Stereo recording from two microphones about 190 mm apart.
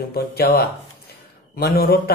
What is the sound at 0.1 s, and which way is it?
A man's voice, 55° left (ahead or behind).